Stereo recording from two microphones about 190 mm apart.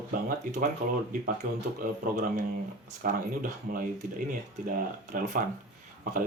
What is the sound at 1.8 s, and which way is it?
Speech, 45° right (ahead or behind).